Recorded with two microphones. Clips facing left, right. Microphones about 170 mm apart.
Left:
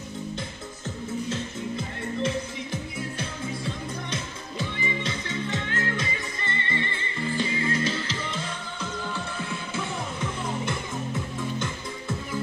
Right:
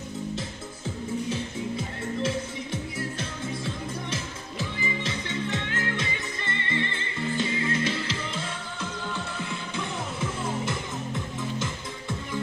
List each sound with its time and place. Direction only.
0.4 s music: 10° right (ahead or behind)
11.5 s music: centre (ahead or behind)